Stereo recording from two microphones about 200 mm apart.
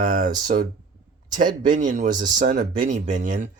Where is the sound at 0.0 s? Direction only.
40° right (ahead or behind).